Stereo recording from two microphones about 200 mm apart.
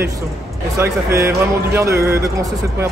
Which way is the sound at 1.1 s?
15° right (ahead or behind).